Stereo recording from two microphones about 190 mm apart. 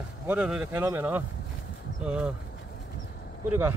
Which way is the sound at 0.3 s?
5° right (ahead or behind).